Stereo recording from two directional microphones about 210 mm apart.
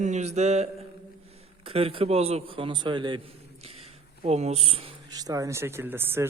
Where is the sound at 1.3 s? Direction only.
30° right (ahead or behind).